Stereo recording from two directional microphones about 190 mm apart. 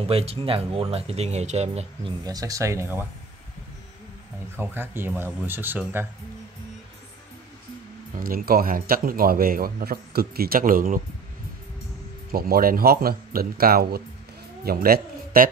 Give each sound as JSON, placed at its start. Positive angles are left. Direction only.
{"t": 0.1, "sound": "speech", "side_deg": -30}
{"t": 2.2, "sound": "speech", "side_deg": -20}
{"t": 4.6, "sound": "speech", "side_deg": -10}
{"t": 8.2, "sound": "a man's voice", "side_deg": -50}
{"t": 12.3, "sound": "a man's voice", "side_deg": -50}